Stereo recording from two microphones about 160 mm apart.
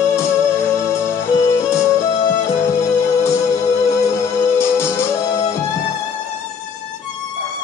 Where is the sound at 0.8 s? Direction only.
15° left (ahead or behind).